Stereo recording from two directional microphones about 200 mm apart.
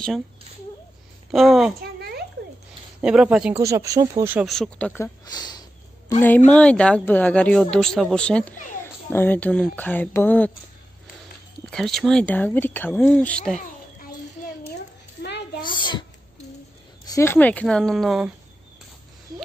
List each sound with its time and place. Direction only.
1.3 s speech: centre (ahead or behind)
1.8 s a sound: 50° right (ahead or behind)
3.0 s speech: 5° right (ahead or behind)
4.5 s speech: 5° left (ahead or behind)
11.7 s speech: centre (ahead or behind)
15.2 s a sound: 60° left (ahead or behind)
15.7 s a child's voice: 25° left (ahead or behind)
17.1 s speech: 10° left (ahead or behind)